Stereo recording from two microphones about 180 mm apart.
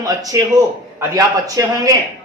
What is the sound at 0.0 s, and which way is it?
A man's voice, 20° right (ahead or behind).